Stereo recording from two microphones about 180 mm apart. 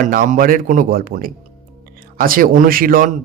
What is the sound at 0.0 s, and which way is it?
Speech, 45° right (ahead or behind).